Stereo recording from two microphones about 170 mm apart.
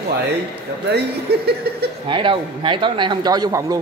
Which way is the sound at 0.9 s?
70° right (ahead or behind).